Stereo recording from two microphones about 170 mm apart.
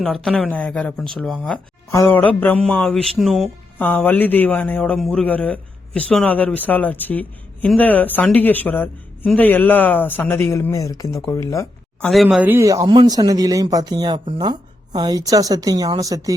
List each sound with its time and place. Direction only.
0.0 s speech: 5° left (ahead or behind)
1.9 s a man's voice: 15° left (ahead or behind)
3.8 s a man's voice: 10° left (ahead or behind)
12.0 s speech: centre (ahead or behind); by 16.3 s 20° right (ahead or behind)